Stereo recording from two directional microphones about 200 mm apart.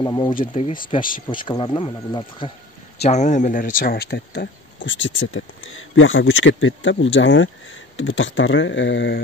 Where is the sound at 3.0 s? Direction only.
35° left (ahead or behind).